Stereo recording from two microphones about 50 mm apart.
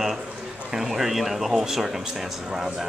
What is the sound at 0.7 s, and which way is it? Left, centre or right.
Speech, centre.